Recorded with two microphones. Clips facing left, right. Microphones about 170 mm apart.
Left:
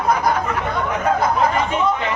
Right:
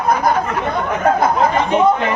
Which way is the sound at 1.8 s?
55° right (ahead or behind).